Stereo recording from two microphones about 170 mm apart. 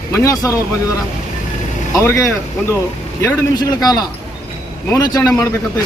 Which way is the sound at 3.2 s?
20° left (ahead or behind).